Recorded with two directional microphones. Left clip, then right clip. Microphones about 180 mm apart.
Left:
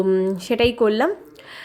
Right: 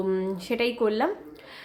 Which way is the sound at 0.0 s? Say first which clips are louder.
Left 8 dB; 25° left (ahead or behind).